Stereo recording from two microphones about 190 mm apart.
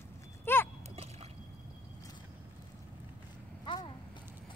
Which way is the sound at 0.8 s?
35° right (ahead or behind).